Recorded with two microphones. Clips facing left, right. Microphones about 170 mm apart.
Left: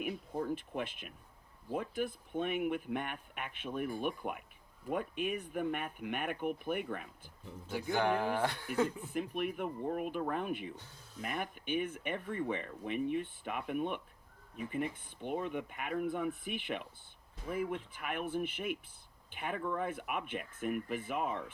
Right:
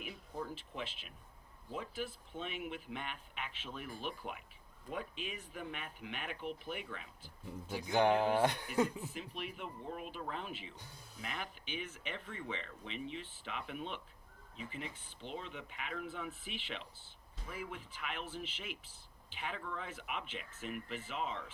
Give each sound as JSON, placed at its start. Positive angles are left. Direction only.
{"t": 0.0, "sound": "a sound", "side_deg": 55}
{"t": 1.7, "sound": "speech", "side_deg": 55}
{"t": 7.9, "sound": "speech", "side_deg": -20}
{"t": 9.0, "sound": "speech", "side_deg": 55}